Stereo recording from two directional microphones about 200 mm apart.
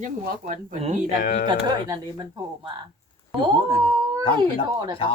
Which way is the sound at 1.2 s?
45° left (ahead or behind).